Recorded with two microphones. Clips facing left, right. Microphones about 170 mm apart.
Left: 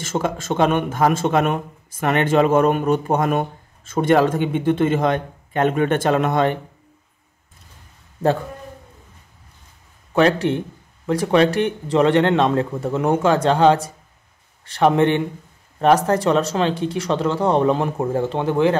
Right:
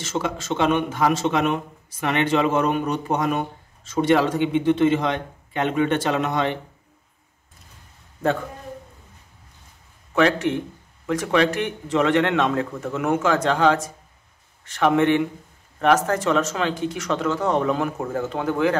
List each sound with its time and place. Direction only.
0.0 s speech: 50° left (ahead or behind)
10.1 s speech: 30° left (ahead or behind)